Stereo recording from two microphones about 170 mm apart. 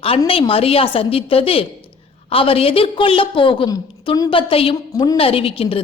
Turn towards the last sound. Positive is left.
turn(degrees=35)  # may be behind; listen again after turning